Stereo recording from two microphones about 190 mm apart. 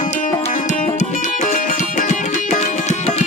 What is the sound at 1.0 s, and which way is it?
Music, 40° left (ahead or behind).